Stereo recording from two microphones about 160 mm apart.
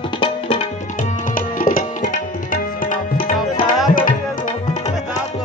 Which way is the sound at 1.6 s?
55° left (ahead or behind).